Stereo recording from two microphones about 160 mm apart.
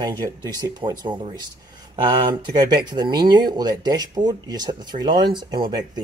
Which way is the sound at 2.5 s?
25° right (ahead or behind).